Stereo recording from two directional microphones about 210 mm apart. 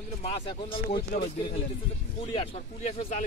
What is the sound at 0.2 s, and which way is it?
Speech, 30° left (ahead or behind).